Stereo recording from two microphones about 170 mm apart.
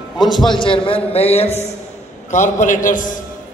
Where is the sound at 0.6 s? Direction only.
30° left (ahead or behind).